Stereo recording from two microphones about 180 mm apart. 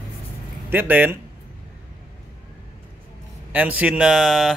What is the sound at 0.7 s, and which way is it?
Speech, 10° right (ahead or behind).